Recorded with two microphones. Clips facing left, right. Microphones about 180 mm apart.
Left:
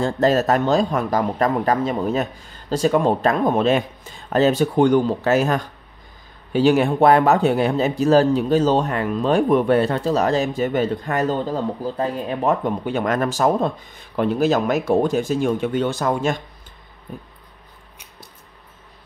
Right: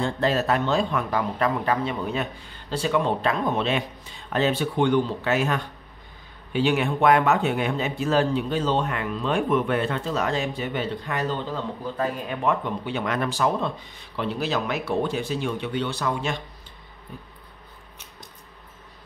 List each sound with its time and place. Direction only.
0.0 s a man's voice: 45° left (ahead or behind)